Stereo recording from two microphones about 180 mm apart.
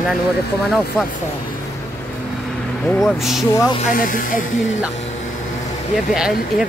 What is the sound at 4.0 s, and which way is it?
Speech, 50° left (ahead or behind).